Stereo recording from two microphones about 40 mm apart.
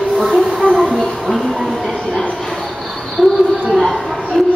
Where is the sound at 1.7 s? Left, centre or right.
Centre.